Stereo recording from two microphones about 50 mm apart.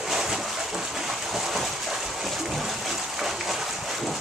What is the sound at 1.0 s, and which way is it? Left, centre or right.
Water, centre.